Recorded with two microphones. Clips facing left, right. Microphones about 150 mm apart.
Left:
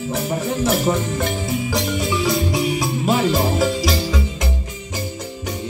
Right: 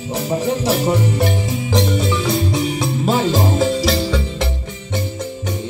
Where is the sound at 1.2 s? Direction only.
25° right (ahead or behind).